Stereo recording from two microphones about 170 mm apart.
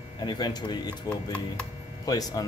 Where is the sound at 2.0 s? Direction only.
20° left (ahead or behind).